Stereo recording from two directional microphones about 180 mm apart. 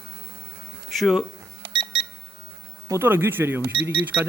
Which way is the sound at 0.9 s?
Centre (ahead or behind).